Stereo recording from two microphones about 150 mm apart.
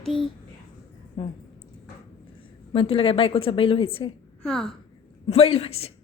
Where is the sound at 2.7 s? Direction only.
35° left (ahead or behind).